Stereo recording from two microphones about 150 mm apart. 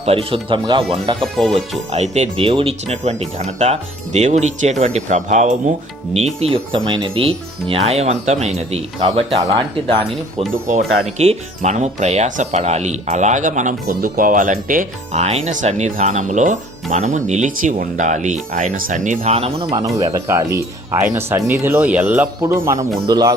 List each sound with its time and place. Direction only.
0.0 s speech: 40° right (ahead or behind)
1.2 s speech: centre (ahead or behind)
1.9 s speech: 45° right (ahead or behind)
10.5 s speech: 55° right (ahead or behind)
11.0 s speech: 45° right (ahead or behind)
20.1 s speech: 20° right (ahead or behind)